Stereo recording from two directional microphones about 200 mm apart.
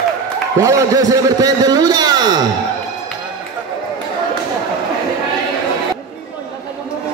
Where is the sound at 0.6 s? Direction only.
15° right (ahead or behind).